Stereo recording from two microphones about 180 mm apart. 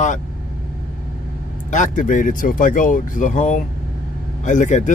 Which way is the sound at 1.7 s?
45° left (ahead or behind).